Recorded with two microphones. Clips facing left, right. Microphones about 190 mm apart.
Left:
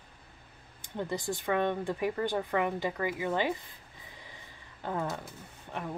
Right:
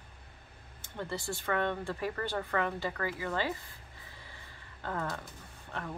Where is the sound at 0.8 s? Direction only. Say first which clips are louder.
Left 4 dB; 15° left (ahead or behind).